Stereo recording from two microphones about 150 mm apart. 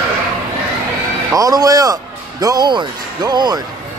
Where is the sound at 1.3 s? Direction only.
25° right (ahead or behind).